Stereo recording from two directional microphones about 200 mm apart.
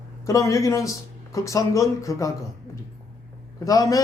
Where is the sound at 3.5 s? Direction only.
15° left (ahead or behind).